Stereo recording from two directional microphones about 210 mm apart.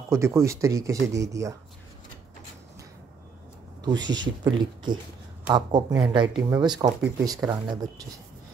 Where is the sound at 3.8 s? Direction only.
20° right (ahead or behind).